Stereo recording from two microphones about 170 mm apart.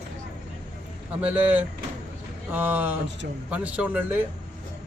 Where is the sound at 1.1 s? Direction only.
10° right (ahead or behind).